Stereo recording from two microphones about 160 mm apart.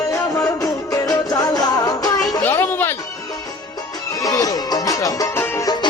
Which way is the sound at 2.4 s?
15° left (ahead or behind).